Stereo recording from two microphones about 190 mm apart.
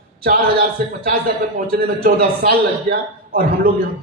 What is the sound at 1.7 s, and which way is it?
A man's voice, 55° right (ahead or behind).